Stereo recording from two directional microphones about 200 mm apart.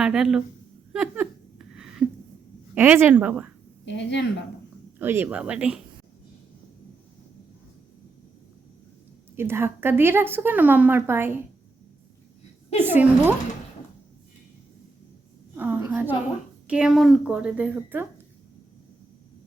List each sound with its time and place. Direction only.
0.0 s a woman's voice: 5° right (ahead or behind)
0.9 s a sound: 5° right (ahead or behind)
2.7 s speech: 10° right (ahead or behind)
3.8 s speech: 60° left (ahead or behind)
4.9 s speech: 10° right (ahead or behind)
9.3 s speech: 10° right (ahead or behind)
12.8 s speech: 10° right (ahead or behind)
15.5 s a woman's voice: 10° right (ahead or behind)